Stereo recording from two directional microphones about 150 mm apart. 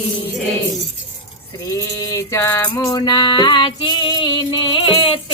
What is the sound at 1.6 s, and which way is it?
Music, 25° left (ahead or behind).